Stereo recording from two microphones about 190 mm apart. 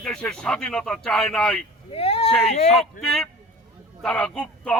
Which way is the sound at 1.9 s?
30° left (ahead or behind).